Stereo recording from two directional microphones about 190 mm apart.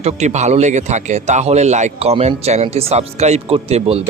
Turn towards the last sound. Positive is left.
turn(degrees=-30)  # may be behind; listen again after turning